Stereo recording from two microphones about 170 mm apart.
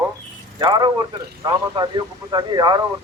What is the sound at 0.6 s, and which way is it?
A man's voice, 25° right (ahead or behind).